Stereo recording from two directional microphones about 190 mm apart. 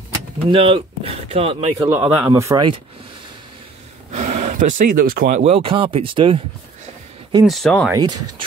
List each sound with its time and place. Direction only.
0.5 s speech: 25° right (ahead or behind)
1.9 s speech: 10° right (ahead or behind)
4.1 s speech: 40° right (ahead or behind)
5.4 s speech: 30° right (ahead or behind)
7.4 s speech: centre (ahead or behind)
7.9 s speech: 20° right (ahead or behind)